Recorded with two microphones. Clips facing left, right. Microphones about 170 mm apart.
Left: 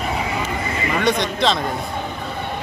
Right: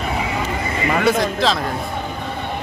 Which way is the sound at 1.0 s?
5° right (ahead or behind).